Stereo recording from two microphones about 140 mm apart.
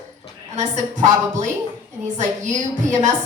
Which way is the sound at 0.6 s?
60° right (ahead or behind).